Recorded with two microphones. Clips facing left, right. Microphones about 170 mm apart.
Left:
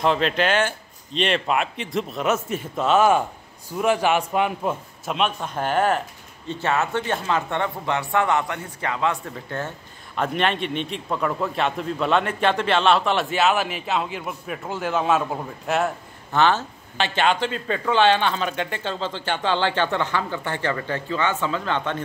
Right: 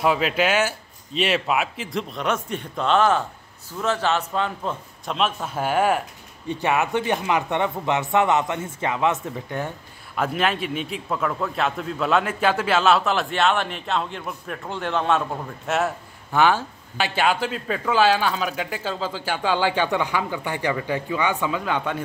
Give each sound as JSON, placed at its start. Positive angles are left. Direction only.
{"t": 0.0, "sound": "a man's voice", "side_deg": -5}
{"t": 5.0, "sound": "a man's voice", "side_deg": 0}
{"t": 10.1, "sound": "a man's voice", "side_deg": -5}
{"t": 16.3, "sound": "a man's voice", "side_deg": -10}